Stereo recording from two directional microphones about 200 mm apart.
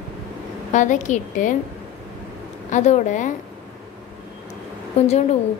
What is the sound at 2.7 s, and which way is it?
Speech, 35° left (ahead or behind).